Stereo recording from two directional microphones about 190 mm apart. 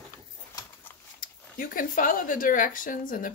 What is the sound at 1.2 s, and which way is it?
Speech, 50° left (ahead or behind).